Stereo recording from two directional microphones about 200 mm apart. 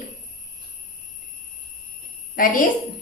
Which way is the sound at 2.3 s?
45° left (ahead or behind).